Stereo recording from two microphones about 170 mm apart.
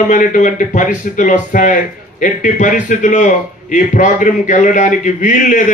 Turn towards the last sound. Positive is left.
turn(degrees=50)  # may be behind; listen again after turning